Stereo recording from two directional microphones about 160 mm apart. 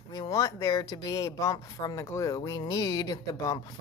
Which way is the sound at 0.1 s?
25° left (ahead or behind).